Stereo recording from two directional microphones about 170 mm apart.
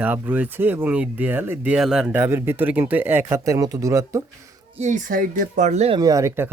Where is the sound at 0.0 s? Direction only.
10° right (ahead or behind).